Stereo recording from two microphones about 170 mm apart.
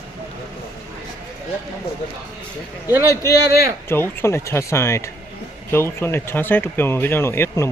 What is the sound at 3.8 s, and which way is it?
Speech, 15° left (ahead or behind).